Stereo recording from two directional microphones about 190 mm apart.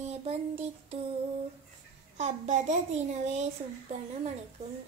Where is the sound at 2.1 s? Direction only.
40° right (ahead or behind).